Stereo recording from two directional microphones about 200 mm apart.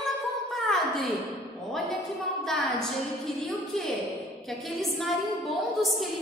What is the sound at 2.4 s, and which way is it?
Speech, centre (ahead or behind).